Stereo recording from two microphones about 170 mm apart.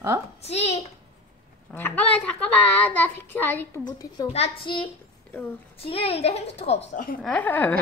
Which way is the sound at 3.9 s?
25° left (ahead or behind).